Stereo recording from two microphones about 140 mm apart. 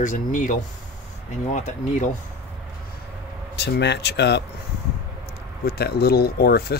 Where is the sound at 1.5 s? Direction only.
60° left (ahead or behind).